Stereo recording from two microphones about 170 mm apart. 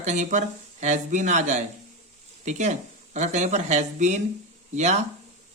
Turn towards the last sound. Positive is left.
turn(degrees=-40)  # may be behind; listen again after turning